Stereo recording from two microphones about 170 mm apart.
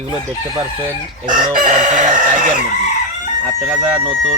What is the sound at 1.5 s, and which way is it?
Chicken, 50° right (ahead or behind).